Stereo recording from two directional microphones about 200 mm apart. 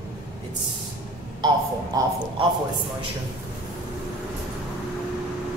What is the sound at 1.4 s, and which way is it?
A man's voice, 20° right (ahead or behind).